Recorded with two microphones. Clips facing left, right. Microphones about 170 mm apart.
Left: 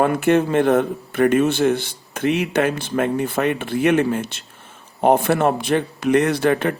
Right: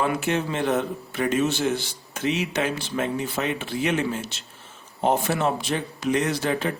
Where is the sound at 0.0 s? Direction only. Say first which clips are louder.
Left 8 dB; 55° left (ahead or behind).